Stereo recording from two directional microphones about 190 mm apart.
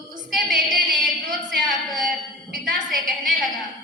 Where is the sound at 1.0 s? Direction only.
45° right (ahead or behind).